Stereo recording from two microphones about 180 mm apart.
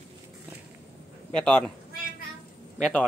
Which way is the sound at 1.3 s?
5° left (ahead or behind).